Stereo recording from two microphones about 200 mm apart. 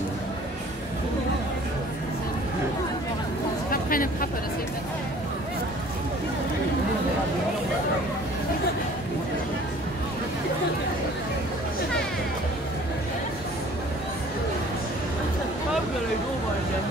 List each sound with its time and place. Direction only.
3.7 s speech: 45° left (ahead or behind)